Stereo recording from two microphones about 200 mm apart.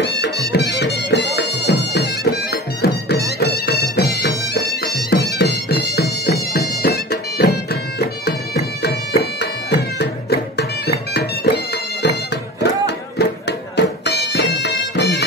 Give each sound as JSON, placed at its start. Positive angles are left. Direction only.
{"t": 0.5, "sound": "music", "side_deg": 60}
{"t": 8.8, "sound": "music", "side_deg": 55}